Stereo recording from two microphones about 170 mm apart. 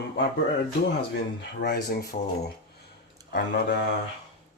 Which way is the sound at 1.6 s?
65° left (ahead or behind).